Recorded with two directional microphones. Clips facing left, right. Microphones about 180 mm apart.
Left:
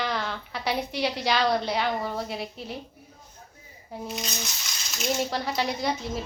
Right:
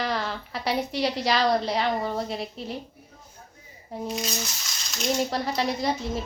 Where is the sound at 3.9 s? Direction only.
Centre (ahead or behind).